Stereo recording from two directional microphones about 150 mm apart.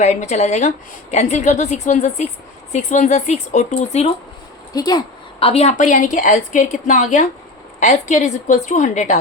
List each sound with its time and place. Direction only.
0.0 s speech: 50° left (ahead or behind)
4.7 s speech: 25° left (ahead or behind)
5.4 s a woman's voice: 40° left (ahead or behind)